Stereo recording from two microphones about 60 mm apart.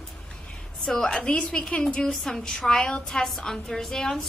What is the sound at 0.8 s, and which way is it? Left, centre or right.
A woman's voice, centre.